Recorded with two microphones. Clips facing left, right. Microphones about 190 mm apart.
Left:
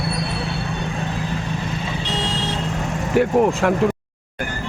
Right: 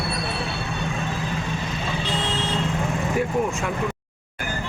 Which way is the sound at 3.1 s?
60° left (ahead or behind).